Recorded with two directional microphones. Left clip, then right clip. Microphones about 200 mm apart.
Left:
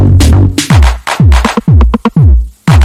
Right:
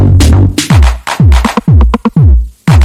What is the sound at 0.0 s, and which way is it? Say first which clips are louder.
Music: even; centre (ahead or behind).